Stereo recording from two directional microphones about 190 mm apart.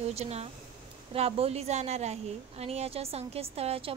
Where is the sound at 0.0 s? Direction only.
35° right (ahead or behind).